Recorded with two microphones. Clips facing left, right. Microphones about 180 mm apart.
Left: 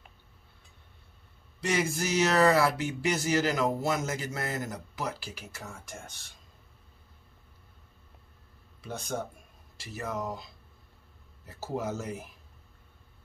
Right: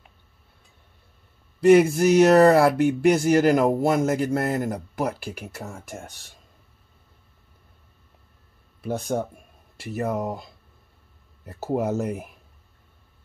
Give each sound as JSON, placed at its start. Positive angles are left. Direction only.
{"t": 1.6, "sound": "speech", "side_deg": -60}
{"t": 8.8, "sound": "speech", "side_deg": -55}